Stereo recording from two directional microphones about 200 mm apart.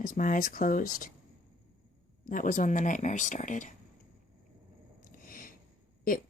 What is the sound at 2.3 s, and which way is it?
Speech, 40° left (ahead or behind).